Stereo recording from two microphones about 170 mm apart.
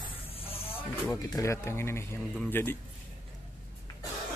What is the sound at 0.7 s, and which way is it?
Speech, 15° left (ahead or behind).